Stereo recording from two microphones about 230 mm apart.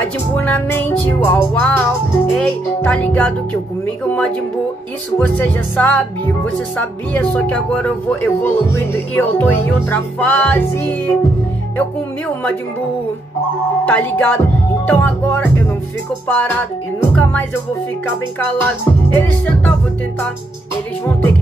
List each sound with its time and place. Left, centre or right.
0.0 s speech: centre
13.8 s speech: centre
18.6 s speech: centre